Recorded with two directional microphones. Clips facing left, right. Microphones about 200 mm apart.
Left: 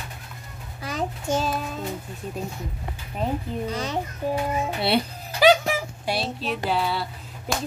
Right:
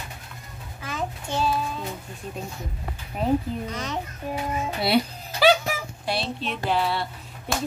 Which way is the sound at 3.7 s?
35° left (ahead or behind).